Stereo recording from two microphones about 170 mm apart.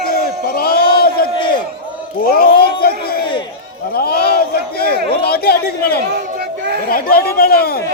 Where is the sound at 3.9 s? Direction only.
65° left (ahead or behind).